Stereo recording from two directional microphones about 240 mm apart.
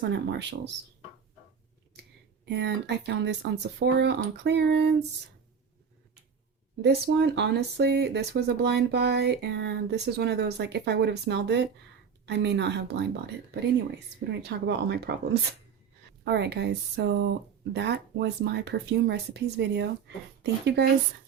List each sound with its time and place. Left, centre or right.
0.0 s speech: right
2.5 s speech: right
6.8 s speech: right